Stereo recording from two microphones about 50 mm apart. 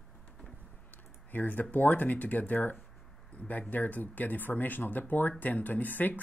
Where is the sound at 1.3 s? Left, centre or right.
Left.